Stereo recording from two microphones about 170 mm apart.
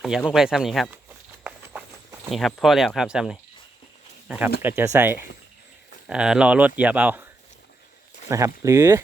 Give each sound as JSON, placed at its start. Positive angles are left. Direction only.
{"t": 0.0, "sound": "speech", "side_deg": 0}
{"t": 2.3, "sound": "speech", "side_deg": 0}
{"t": 8.3, "sound": "speech", "side_deg": -15}